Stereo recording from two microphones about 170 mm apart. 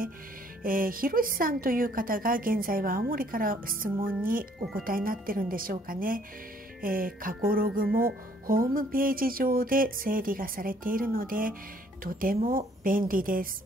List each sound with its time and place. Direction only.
0.7 s a woman's voice: 55° right (ahead or behind)